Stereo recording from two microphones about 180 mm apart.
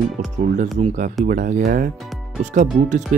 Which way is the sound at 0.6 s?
45° right (ahead or behind).